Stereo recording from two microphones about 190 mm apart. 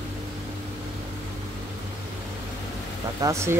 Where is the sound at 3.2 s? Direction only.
15° right (ahead or behind).